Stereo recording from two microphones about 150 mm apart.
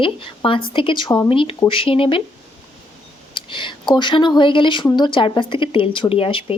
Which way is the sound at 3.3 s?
35° left (ahead or behind).